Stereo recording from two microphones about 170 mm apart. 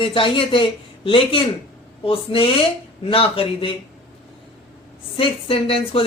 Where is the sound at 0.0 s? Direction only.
30° left (ahead or behind).